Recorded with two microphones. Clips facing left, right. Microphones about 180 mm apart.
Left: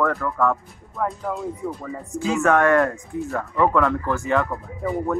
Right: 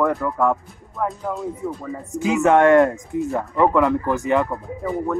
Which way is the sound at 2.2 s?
20° right (ahead or behind).